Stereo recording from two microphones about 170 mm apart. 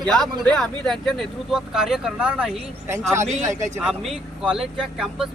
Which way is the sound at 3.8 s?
5° right (ahead or behind).